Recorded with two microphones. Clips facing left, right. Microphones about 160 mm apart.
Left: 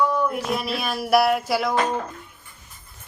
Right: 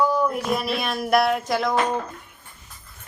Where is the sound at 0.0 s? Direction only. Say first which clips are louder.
Right 1 dB; centre (ahead or behind).